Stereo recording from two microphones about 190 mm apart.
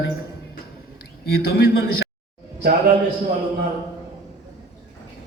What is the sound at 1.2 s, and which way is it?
Speech, 55° left (ahead or behind).